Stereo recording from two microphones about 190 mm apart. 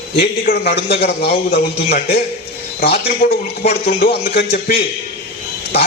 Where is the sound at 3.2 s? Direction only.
45° left (ahead or behind).